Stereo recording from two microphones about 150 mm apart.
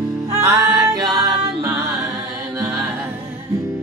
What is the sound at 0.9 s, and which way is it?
Music, 25° right (ahead or behind).